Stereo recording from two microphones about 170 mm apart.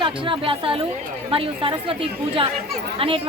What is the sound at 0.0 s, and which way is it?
A woman's voice, 30° right (ahead or behind).